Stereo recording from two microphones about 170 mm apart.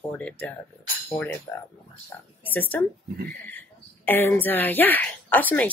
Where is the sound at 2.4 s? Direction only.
10° left (ahead or behind).